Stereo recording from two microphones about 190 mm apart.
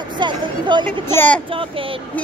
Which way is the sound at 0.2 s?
25° right (ahead or behind).